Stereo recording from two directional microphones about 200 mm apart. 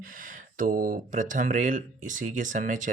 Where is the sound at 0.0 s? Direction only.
40° right (ahead or behind).